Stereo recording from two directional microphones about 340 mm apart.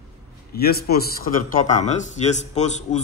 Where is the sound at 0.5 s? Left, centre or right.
Left.